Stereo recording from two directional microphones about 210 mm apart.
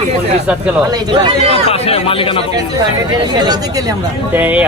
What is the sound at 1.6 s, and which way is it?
Speech, 30° left (ahead or behind).